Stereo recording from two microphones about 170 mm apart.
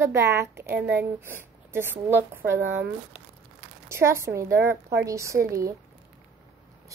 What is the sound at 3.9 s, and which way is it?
Speech, 15° right (ahead or behind).